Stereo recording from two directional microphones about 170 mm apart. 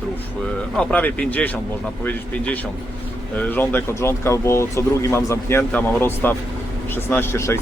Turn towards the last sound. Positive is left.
turn(degrees=15)  # may be behind; listen again after turning